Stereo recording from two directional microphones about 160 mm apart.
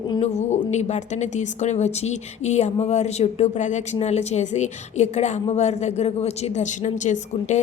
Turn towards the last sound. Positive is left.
turn(degrees=50)  # may be behind; listen again after turning